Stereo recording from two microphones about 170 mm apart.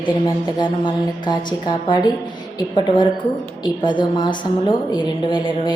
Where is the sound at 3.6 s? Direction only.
30° left (ahead or behind).